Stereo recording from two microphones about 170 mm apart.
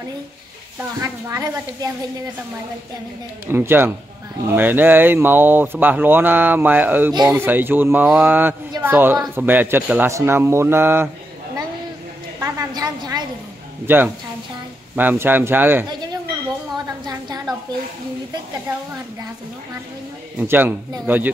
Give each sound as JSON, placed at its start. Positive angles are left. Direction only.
{"t": 1.0, "sound": "a woman's voice", "side_deg": -20}
{"t": 3.4, "sound": "speech", "side_deg": -15}
{"t": 12.4, "sound": "a sound", "side_deg": -20}
{"t": 13.8, "sound": "speech", "side_deg": -10}
{"t": 16.7, "sound": "a sound", "side_deg": -25}
{"t": 20.3, "sound": "speech", "side_deg": -10}